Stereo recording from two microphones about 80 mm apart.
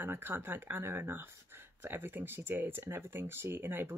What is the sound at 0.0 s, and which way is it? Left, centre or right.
Speech, right.